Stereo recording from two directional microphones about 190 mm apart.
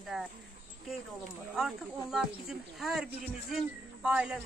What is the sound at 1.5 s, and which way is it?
Speech, centre (ahead or behind).